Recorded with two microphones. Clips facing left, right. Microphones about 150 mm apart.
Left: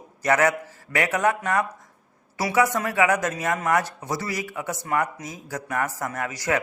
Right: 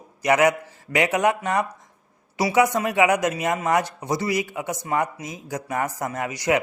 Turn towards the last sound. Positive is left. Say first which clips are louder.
# right 3 dB
turn(degrees=-15)  # may be behind; listen again after turning